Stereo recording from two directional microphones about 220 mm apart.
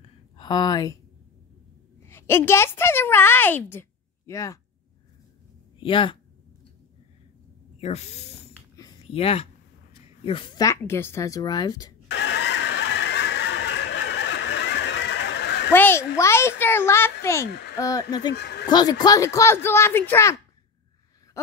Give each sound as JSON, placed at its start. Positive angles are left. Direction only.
{"t": 0.0, "sound": "a sound", "side_deg": 20}
{"t": 2.0, "sound": "a woman's voice", "side_deg": 10}
{"t": 5.8, "sound": "speech", "side_deg": 20}
{"t": 7.8, "sound": "hiss", "side_deg": 30}
{"t": 9.0, "sound": "a woman's voice", "side_deg": 25}
{"t": 12.1, "sound": "a sound", "side_deg": 50}
{"t": 15.7, "sound": "a woman's voice", "side_deg": 10}
{"t": 17.5, "sound": "speech", "side_deg": 50}
{"t": 17.7, "sound": "a woman's voice", "side_deg": 15}
{"t": 18.3, "sound": "speech", "side_deg": 50}
{"t": 18.7, "sound": "a woman's voice", "side_deg": 20}